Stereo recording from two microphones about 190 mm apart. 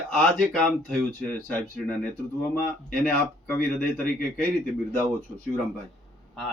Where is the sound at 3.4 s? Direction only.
10° left (ahead or behind).